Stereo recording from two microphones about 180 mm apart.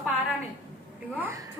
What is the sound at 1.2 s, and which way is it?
Speech, 15° right (ahead or behind).